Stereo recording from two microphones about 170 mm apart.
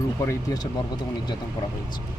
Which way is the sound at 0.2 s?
20° left (ahead or behind).